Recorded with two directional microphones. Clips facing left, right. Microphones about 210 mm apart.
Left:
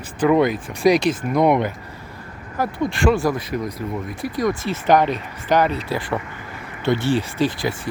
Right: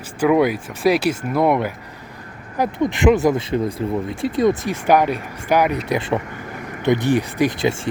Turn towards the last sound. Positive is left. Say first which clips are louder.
# right 3 dB
turn(degrees=-20)  # may be behind; listen again after turning